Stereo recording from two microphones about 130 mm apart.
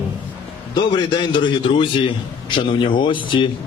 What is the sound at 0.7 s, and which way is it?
A man's voice, 35° left (ahead or behind).